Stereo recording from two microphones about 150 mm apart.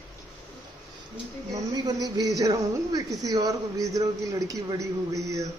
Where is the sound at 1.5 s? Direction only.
25° right (ahead or behind).